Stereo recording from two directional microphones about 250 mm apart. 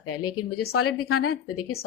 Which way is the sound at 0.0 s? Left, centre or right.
Left.